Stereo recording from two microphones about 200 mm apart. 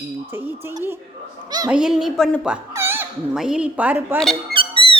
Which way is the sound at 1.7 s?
Centre (ahead or behind).